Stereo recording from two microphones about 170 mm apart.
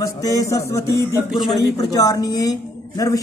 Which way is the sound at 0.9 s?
15° right (ahead or behind).